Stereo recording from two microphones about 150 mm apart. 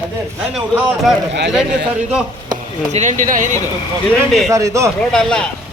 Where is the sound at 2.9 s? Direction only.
55° right (ahead or behind).